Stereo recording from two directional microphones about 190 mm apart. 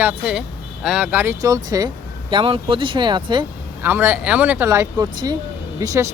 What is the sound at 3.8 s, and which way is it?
Speech, 10° right (ahead or behind).